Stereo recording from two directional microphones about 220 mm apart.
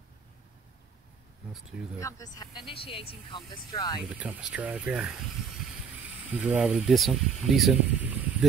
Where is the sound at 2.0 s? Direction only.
15° left (ahead or behind).